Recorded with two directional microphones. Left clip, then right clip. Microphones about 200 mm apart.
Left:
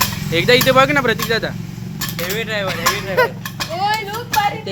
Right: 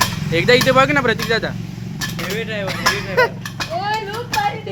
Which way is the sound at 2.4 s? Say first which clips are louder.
Left 4 dB; 30° left (ahead or behind).